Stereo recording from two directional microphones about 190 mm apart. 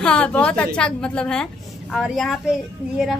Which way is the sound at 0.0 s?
5° left (ahead or behind).